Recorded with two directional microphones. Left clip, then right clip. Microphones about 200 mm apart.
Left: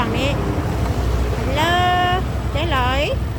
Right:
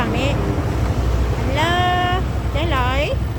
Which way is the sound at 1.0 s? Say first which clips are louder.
Even; 55° left (ahead or behind).